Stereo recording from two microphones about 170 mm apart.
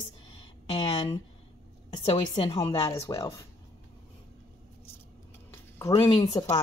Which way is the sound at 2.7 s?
20° left (ahead or behind).